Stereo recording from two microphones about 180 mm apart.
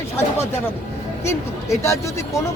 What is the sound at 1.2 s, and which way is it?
Speech, 15° left (ahead or behind).